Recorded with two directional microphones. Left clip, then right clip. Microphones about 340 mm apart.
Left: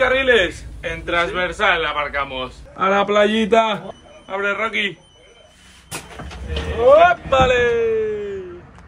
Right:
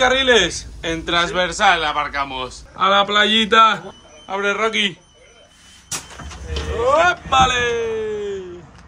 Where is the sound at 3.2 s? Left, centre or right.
Centre.